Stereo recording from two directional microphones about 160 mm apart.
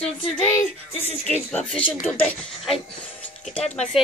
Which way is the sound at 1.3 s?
5° left (ahead or behind).